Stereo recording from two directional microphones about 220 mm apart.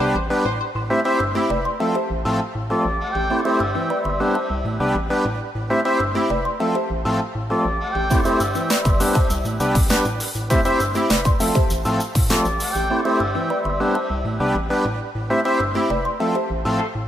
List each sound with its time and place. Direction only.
0.0 s music: centre (ahead or behind)